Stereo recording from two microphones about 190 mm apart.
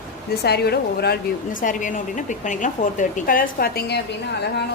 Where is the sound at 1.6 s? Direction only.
40° left (ahead or behind).